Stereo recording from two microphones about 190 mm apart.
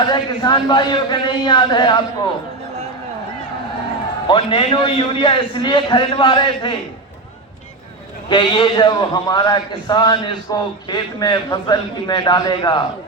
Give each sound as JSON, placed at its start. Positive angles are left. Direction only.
{"t": 0.0, "sound": "a man's voice", "side_deg": 25}
{"t": 4.3, "sound": "a man's voice", "side_deg": 25}
{"t": 8.3, "sound": "a man's voice", "side_deg": 25}